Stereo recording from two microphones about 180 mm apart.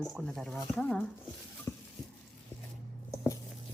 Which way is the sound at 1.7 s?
15° left (ahead or behind).